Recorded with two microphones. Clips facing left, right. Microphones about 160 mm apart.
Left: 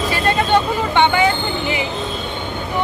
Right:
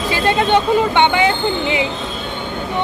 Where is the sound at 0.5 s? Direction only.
15° right (ahead or behind).